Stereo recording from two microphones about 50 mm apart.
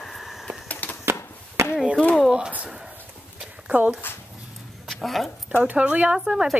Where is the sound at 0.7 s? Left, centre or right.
Left.